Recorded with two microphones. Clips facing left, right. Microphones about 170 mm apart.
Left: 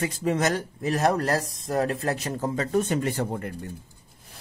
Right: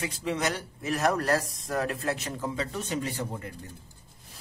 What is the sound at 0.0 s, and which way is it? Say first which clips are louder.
Speech: left 5 dB; 45° left (ahead or behind).